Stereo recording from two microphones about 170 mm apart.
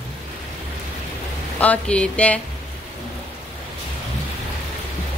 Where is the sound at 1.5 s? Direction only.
10° left (ahead or behind).